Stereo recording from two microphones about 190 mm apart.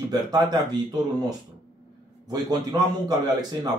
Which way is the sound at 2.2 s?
20° right (ahead or behind).